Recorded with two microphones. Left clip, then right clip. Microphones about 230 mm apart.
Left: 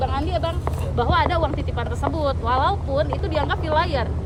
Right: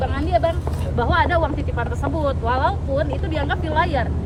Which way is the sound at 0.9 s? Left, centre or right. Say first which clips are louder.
Right 2 dB; centre.